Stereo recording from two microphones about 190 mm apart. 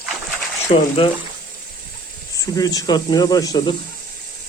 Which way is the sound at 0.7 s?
25° left (ahead or behind).